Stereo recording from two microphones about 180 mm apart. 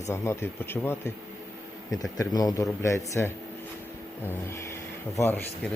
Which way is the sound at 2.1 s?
20° left (ahead or behind).